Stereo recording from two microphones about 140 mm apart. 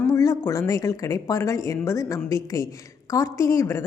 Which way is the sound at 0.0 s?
20° left (ahead or behind).